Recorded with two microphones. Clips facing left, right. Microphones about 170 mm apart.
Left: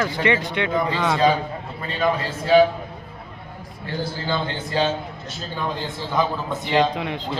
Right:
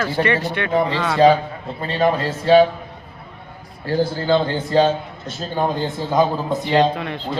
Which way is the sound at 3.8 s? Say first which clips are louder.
Right 8 dB; 40° right (ahead or behind).